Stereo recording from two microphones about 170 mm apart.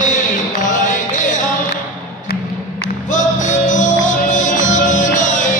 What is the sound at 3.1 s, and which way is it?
Music, 45° left (ahead or behind).